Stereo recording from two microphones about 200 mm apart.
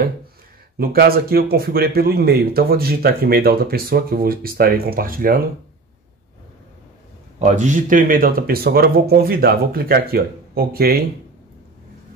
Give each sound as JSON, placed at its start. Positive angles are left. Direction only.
{"t": 0.7, "sound": "speech", "side_deg": -50}
{"t": 7.3, "sound": "speech", "side_deg": -35}